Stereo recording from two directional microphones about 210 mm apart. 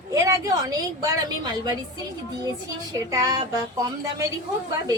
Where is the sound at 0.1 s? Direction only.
15° right (ahead or behind).